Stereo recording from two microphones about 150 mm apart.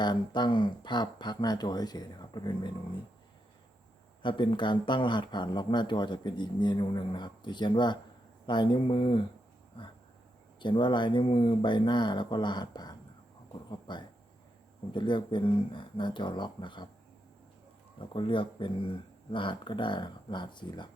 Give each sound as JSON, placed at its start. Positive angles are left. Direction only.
{"t": 0.0, "sound": "speech", "side_deg": 30}
{"t": 4.2, "sound": "speech", "side_deg": 35}
{"t": 10.6, "sound": "speech", "side_deg": 30}
{"t": 18.0, "sound": "speech", "side_deg": 35}